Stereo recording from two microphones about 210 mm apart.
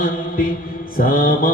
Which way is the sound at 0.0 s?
40° left (ahead or behind).